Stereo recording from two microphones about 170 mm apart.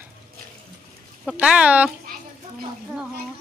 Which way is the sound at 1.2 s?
5° right (ahead or behind).